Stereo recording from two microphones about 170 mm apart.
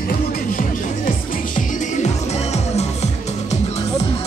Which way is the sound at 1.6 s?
45° left (ahead or behind).